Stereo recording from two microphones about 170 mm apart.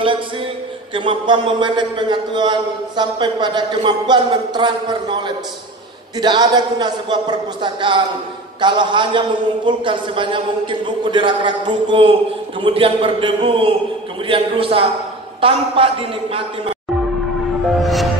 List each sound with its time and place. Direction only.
0.9 s a man's voice: 30° right (ahead or behind)
6.2 s a man's voice: 25° right (ahead or behind)
17.6 s music: centre (ahead or behind)